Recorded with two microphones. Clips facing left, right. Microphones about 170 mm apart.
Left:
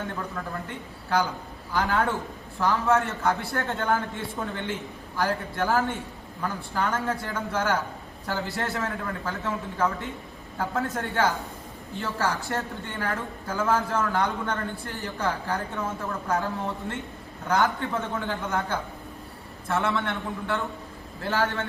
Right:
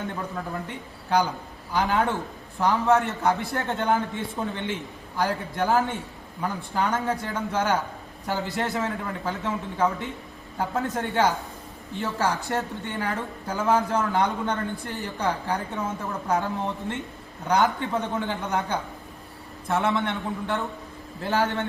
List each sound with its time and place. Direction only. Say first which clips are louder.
0.7 s a woman's voice: right 2 dB; 15° right (ahead or behind)